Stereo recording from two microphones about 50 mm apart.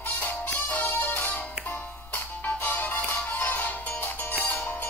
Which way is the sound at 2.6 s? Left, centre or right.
Left.